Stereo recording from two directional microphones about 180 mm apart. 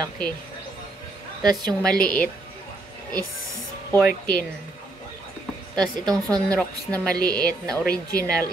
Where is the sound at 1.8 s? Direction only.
5° left (ahead or behind).